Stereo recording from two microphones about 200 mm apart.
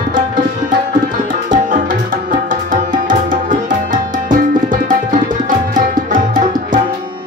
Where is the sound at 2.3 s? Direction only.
40° right (ahead or behind).